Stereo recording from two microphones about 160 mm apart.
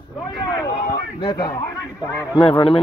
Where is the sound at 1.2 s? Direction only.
30° left (ahead or behind).